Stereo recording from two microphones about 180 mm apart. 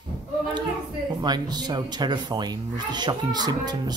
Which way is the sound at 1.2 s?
25° right (ahead or behind).